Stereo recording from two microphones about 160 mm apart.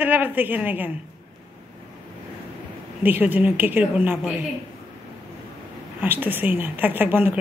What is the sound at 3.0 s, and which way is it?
A woman's voice, 10° right (ahead or behind).